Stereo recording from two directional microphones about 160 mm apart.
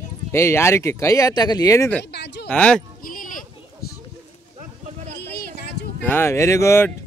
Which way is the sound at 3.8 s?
75° left (ahead or behind).